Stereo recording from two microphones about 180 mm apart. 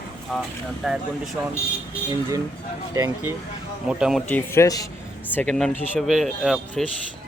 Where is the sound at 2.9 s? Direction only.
15° right (ahead or behind).